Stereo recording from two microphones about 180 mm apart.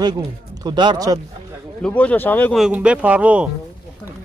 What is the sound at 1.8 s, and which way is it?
Speech, 5° left (ahead or behind).